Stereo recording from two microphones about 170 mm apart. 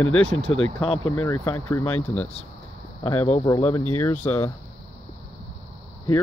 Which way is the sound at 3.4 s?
20° left (ahead or behind).